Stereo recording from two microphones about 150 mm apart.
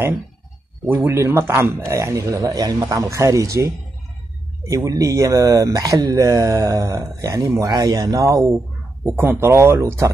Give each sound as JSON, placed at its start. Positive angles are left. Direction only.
{"t": 0.8, "sound": "speech", "side_deg": -15}